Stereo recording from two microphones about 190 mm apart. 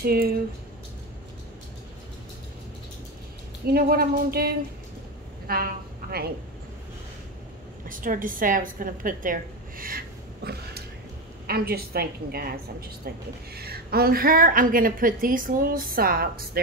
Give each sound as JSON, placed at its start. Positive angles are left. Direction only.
{"t": 0.0, "sound": "a woman's voice", "side_deg": -50}
{"t": 3.7, "sound": "a woman's voice", "side_deg": -55}
{"t": 7.9, "sound": "a woman's voice", "side_deg": -45}
{"t": 13.6, "sound": "a woman's voice", "side_deg": -55}